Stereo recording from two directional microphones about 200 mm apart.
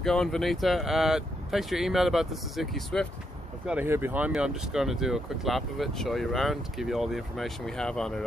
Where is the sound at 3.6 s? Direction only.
10° right (ahead or behind).